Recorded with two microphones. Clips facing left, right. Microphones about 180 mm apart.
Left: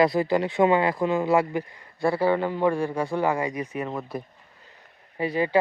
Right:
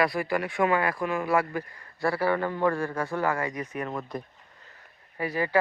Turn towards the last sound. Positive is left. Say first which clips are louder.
# left 3 dB
turn(degrees=20)  # may be behind; listen again after turning